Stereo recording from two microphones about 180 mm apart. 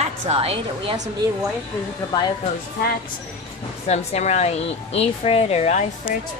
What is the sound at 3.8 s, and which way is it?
A woman's voice, 40° left (ahead or behind).